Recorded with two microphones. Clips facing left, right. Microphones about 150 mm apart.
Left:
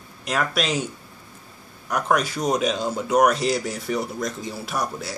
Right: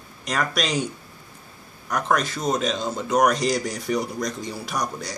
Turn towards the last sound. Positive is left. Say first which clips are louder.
# left 1 dB
turn(degrees=5)  # may be behind; listen again after turning